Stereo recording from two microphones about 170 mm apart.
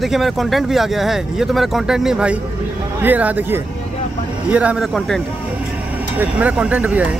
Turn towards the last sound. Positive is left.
turn(degrees=-5)  # may be behind; listen again after turning